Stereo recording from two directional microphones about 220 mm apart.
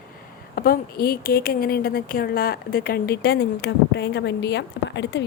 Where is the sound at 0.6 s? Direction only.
45° left (ahead or behind).